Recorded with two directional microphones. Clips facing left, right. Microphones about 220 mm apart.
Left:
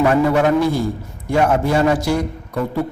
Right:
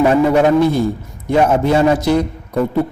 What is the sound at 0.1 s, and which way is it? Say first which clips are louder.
A man's voice: right 3 dB; 20° right (ahead or behind).